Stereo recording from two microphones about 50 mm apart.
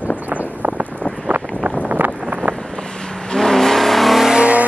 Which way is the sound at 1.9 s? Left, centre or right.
Right.